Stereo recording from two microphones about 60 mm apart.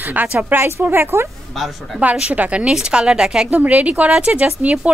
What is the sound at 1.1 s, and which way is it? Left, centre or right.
Speech, right.